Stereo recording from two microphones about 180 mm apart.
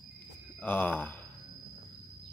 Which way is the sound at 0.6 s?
10° left (ahead or behind).